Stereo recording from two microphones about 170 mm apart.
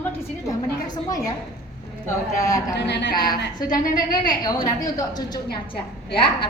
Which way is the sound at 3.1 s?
25° left (ahead or behind).